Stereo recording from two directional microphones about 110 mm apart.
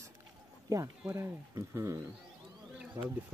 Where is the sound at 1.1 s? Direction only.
25° right (ahead or behind).